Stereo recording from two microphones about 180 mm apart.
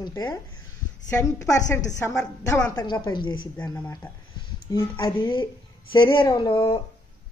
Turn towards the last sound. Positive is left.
turn(degrees=25)  # may be behind; listen again after turning